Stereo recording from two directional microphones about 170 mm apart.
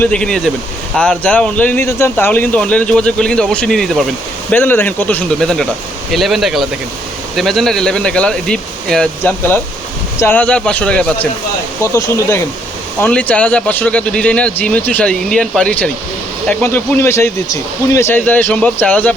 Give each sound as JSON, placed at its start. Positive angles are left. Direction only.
{"t": 0.0, "sound": "speech", "side_deg": 5}